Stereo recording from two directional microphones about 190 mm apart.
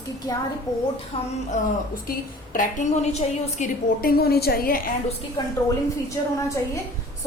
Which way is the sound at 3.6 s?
50° left (ahead or behind).